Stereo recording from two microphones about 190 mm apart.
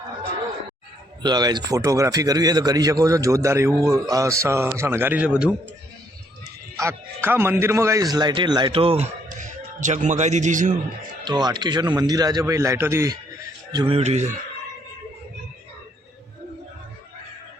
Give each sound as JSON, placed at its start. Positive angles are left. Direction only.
{"t": 1.2, "sound": "speech", "side_deg": -20}
{"t": 9.4, "sound": "a man's voice", "side_deg": -40}
{"t": 11.3, "sound": "speech", "side_deg": -20}
{"t": 13.7, "sound": "speech", "side_deg": -30}